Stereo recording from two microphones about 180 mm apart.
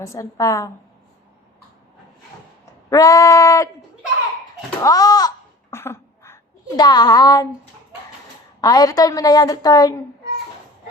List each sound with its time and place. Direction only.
0.0 s a woman's voice: 15° left (ahead or behind)
2.9 s a woman's voice: 20° left (ahead or behind)
4.8 s a woman's voice: 20° left (ahead or behind)
5.7 s a sound: 15° left (ahead or behind)
8.6 s a woman's voice: 20° left (ahead or behind)